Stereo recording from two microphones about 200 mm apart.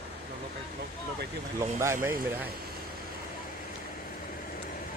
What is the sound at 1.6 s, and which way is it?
Speech, 15° right (ahead or behind).